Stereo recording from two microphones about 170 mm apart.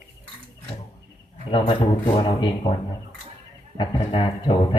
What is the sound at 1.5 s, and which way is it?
Speech, 30° left (ahead or behind).